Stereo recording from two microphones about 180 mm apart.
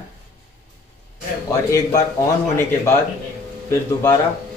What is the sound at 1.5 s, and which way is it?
Speech, 20° left (ahead or behind).